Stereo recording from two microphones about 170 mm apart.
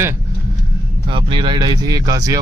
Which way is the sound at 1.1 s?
30° right (ahead or behind).